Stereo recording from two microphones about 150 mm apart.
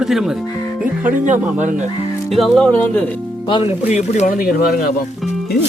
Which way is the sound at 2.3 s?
Centre (ahead or behind).